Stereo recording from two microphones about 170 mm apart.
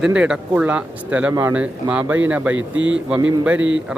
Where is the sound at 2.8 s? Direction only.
90° right.